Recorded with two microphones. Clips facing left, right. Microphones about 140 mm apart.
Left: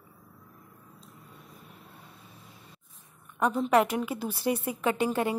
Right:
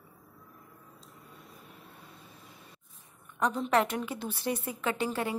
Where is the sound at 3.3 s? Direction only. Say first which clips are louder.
Left 3 dB; 10° left (ahead or behind).